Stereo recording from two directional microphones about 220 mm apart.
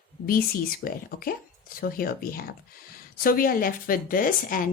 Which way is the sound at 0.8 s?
45° left (ahead or behind).